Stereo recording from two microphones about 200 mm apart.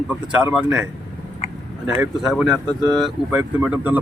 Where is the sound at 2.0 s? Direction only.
Centre (ahead or behind).